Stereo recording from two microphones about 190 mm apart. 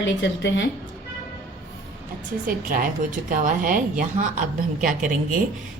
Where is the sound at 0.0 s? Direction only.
70° left (ahead or behind).